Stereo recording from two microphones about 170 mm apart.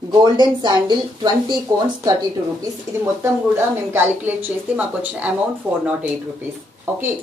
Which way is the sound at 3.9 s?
15° right (ahead or behind).